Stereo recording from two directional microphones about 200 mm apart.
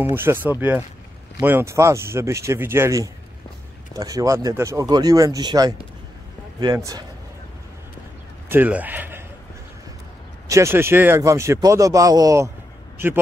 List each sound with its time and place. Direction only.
0.1 s speech: 10° right (ahead or behind)
8.5 s a man's voice: 10° right (ahead or behind)
10.5 s speech: 15° right (ahead or behind)